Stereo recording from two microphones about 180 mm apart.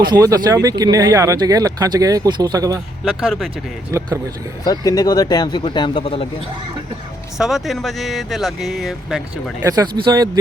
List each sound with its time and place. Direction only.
0.1 s speech: 20° right (ahead or behind)
3.0 s speech: centre (ahead or behind)
3.9 s speech: 15° right (ahead or behind)
4.6 s speech: 20° left (ahead or behind)
7.3 s speech: centre (ahead or behind)
9.6 s speech: 20° right (ahead or behind)